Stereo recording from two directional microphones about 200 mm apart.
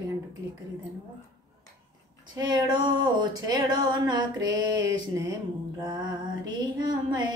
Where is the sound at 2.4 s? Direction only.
20° right (ahead or behind).